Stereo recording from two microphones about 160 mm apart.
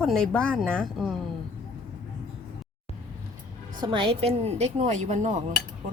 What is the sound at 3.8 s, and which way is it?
A woman's voice, 30° right (ahead or behind).